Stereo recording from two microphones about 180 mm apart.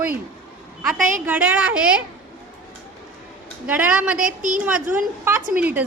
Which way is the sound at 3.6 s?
10° right (ahead or behind).